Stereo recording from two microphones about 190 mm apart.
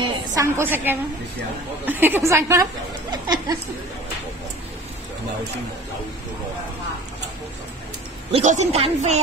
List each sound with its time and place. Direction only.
0.0 s a woman's voice: 20° right (ahead or behind)
8.3 s speech: 35° right (ahead or behind)